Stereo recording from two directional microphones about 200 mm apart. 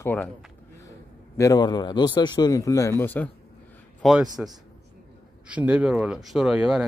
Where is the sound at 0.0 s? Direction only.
10° left (ahead or behind).